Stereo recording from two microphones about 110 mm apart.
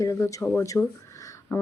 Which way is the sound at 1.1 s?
30° left (ahead or behind).